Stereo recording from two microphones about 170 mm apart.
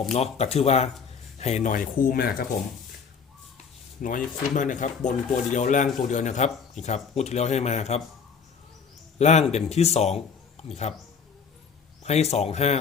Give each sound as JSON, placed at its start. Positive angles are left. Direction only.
{"t": 0.1, "sound": "a man's voice", "side_deg": 40}
{"t": 4.0, "sound": "a man's voice", "side_deg": 50}
{"t": 9.1, "sound": "a man's voice", "side_deg": 40}
{"t": 12.0, "sound": "a man's voice", "side_deg": 40}